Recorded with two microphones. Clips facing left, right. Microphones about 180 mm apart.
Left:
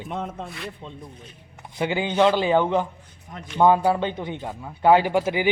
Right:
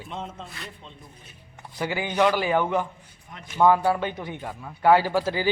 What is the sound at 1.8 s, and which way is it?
A man's voice, 20° left (ahead or behind).